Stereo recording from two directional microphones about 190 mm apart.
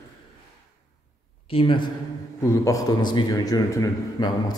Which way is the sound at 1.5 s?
25° left (ahead or behind).